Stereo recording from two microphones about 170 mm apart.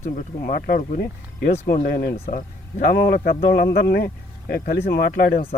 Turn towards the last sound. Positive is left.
turn(degrees=65)  # may be behind; listen again after turning